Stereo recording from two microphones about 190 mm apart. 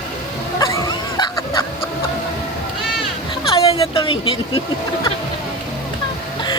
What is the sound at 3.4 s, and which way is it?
Speech, 30° left (ahead or behind).